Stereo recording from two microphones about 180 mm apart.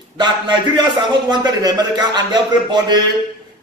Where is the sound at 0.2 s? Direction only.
25° right (ahead or behind).